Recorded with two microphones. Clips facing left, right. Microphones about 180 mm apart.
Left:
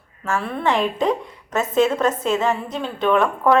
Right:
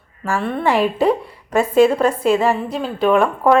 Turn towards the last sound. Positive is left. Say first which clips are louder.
# right 3 dB
turn(degrees=-10)  # may be behind; listen again after turning